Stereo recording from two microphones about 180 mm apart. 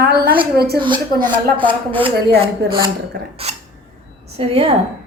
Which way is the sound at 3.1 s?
60° right (ahead or behind).